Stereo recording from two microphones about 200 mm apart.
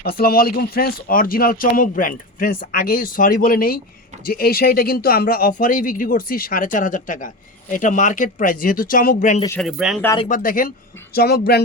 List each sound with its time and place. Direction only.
0.0 s speech: 50° left (ahead or behind)
9.6 s speech: centre (ahead or behind)
10.2 s speech: 40° left (ahead or behind)